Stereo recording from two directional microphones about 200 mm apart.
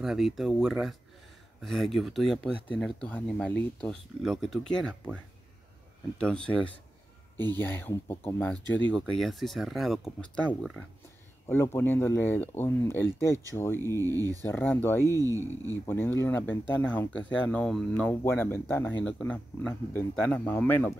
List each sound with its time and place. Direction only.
0.0 s speech: centre (ahead or behind)
11.4 s speech: 10° left (ahead or behind)
14.0 s speech: 15° right (ahead or behind)
14.4 s speech: 10° left (ahead or behind)
15.1 s speech: 15° right (ahead or behind)
15.8 s speech: 10° left (ahead or behind)